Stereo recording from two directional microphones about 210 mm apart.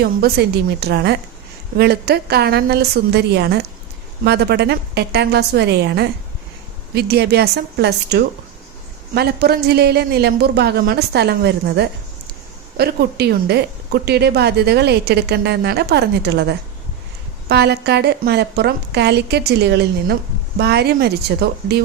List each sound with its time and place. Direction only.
0.0 s speech: 50° right (ahead or behind)